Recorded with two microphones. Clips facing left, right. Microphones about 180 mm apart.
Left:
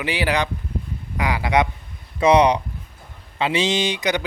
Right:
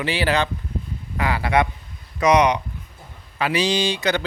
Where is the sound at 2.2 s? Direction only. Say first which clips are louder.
Left 2 dB; 30° left (ahead or behind).